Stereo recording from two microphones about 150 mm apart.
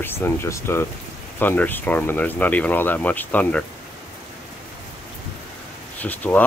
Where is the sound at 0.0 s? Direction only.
15° left (ahead or behind).